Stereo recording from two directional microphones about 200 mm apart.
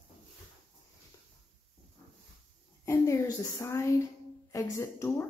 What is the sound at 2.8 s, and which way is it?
A woman's voice, 15° left (ahead or behind).